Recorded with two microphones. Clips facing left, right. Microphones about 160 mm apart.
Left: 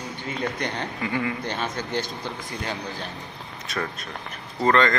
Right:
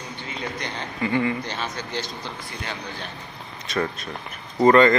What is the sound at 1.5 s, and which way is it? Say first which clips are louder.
Speech: left 2 dB; 50° left (ahead or behind).